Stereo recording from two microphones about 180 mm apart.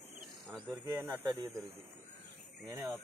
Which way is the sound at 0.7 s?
20° right (ahead or behind).